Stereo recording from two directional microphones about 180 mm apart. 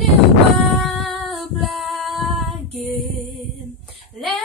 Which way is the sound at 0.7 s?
Centre (ahead or behind).